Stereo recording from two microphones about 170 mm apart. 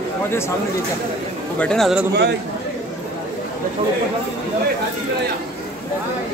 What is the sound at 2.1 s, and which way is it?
Speech, 75° right (ahead or behind).